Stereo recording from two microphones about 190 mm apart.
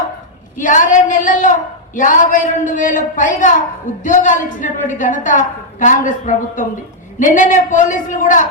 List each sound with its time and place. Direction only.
0.6 s a woman's voice: 45° left (ahead or behind)